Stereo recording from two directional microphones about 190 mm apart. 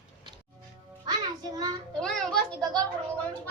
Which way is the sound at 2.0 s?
5° left (ahead or behind).